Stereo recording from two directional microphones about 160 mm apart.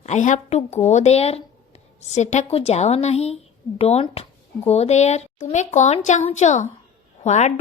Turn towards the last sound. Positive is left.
turn(degrees=45)  # may be behind; listen again after turning